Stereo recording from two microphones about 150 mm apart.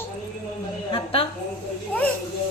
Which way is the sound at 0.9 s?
40° left (ahead or behind).